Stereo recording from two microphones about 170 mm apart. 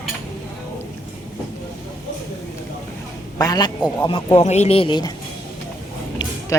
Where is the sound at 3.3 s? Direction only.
20° left (ahead or behind).